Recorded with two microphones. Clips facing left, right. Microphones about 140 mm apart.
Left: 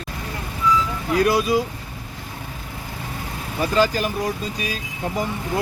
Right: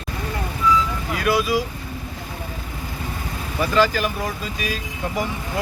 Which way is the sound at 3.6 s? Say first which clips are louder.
Even; 35° left (ahead or behind).